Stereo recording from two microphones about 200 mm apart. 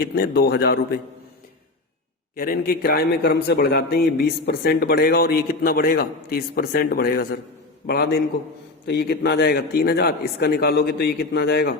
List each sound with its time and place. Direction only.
0.2 s a man's voice: 55° left (ahead or behind)
2.3 s a man's voice: 45° left (ahead or behind)